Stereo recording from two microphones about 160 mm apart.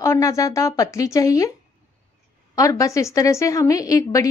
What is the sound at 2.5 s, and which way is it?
A woman's voice, 20° left (ahead or behind).